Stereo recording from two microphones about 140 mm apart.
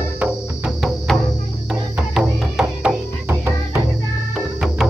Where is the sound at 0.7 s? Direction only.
Centre (ahead or behind).